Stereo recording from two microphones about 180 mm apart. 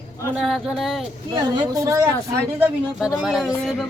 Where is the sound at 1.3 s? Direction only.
20° right (ahead or behind).